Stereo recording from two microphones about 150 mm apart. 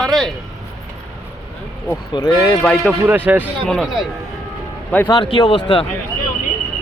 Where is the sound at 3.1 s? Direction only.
10° right (ahead or behind).